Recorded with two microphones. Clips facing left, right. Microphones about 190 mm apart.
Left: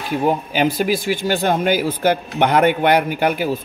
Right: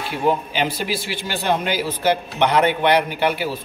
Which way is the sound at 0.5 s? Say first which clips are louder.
Left 5 dB; 45° left (ahead or behind).